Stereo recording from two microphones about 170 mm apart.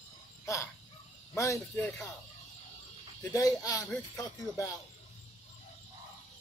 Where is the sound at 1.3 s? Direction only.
15° left (ahead or behind).